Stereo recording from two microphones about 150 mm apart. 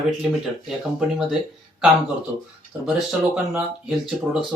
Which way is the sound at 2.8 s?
10° right (ahead or behind).